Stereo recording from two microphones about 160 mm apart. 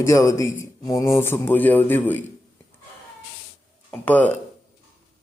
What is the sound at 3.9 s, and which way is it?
Speech, 10° left (ahead or behind).